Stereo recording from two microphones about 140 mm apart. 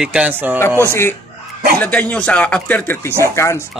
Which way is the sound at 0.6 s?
15° left (ahead or behind).